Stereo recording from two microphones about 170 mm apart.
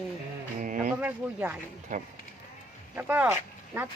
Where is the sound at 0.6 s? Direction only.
50° right (ahead or behind).